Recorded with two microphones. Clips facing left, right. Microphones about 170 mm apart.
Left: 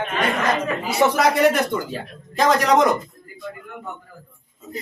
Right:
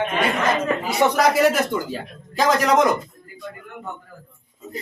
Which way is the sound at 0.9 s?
Centre (ahead or behind).